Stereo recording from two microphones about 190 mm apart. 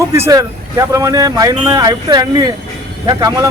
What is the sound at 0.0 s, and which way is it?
Speech, 15° right (ahead or behind).